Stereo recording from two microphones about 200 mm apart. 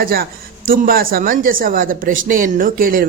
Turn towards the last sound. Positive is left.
turn(degrees=-45)  # may be behind; listen again after turning